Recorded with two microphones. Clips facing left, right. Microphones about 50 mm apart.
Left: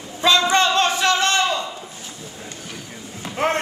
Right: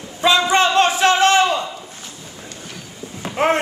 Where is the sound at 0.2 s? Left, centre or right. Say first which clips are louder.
Right 2 dB; centre.